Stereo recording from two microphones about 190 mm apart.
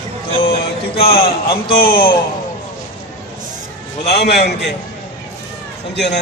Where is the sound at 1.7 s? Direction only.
50° left (ahead or behind).